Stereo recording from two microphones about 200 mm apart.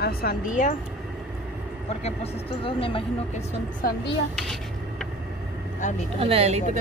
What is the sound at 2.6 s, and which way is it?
Speech, 25° left (ahead or behind).